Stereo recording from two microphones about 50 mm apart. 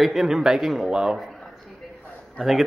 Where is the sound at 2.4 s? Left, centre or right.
Centre.